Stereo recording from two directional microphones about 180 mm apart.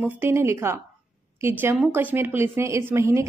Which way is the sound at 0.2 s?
15° right (ahead or behind).